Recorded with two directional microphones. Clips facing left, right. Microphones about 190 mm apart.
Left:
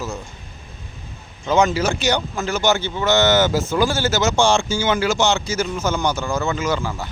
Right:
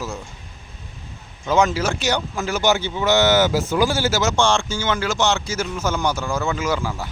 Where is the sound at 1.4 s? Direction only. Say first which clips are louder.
Left 1 dB; 5° right (ahead or behind).